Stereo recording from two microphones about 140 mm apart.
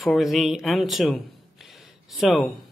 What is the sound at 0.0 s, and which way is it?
Speech, centre (ahead or behind).